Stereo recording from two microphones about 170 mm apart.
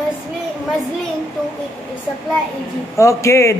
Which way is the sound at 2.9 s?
15° left (ahead or behind).